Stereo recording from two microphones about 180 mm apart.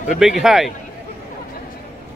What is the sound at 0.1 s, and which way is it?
Speech, 5° right (ahead or behind).